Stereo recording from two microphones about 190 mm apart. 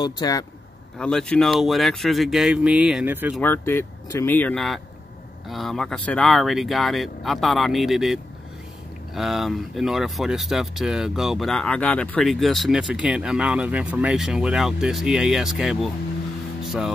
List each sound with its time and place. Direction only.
0.0 s speech: 20° left (ahead or behind)
0.9 s speech: 5° left (ahead or behind)
3.3 s speech: 10° left (ahead or behind)
16.6 s music: centre (ahead or behind)